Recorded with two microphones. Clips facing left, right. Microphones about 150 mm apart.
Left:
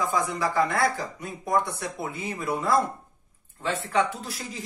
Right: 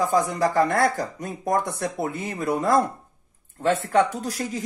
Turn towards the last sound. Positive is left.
turn(degrees=-45)  # may be behind; listen again after turning